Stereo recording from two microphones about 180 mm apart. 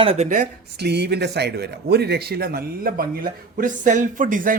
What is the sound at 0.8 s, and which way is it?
Speech, 65° right (ahead or behind).